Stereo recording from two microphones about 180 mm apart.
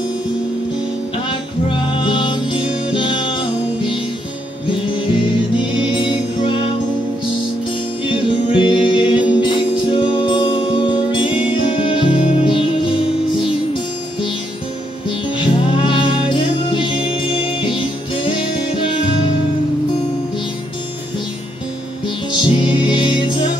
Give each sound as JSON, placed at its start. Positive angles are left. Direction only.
{"t": 1.1, "sound": "music", "side_deg": 30}
{"t": 4.6, "sound": "music", "side_deg": 30}
{"t": 8.0, "sound": "music", "side_deg": 30}
{"t": 15.0, "sound": "music", "side_deg": 25}
{"t": 22.0, "sound": "music", "side_deg": 25}